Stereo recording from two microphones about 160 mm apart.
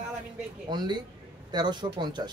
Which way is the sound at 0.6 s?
30° right (ahead or behind).